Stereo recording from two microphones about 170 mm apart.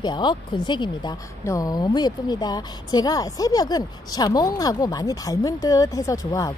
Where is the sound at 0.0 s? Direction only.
25° left (ahead or behind).